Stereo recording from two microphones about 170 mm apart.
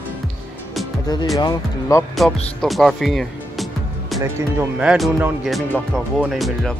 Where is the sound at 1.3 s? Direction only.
20° left (ahead or behind).